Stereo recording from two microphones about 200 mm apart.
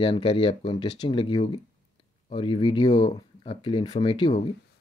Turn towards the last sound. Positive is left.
turn(degrees=25)  # may be behind; listen again after turning